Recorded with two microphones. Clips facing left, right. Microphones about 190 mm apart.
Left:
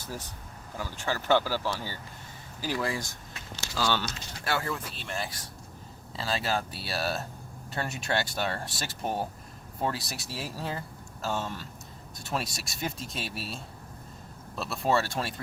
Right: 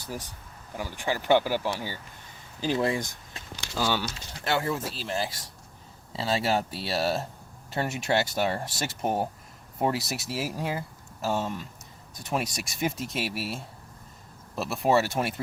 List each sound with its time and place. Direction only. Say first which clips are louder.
0.0 s speech: right 2 dB; 15° right (ahead or behind)
4.4 s speech: right 4 dB; 20° right (ahead or behind)
14.5 s speech: right 4 dB; 20° right (ahead or behind)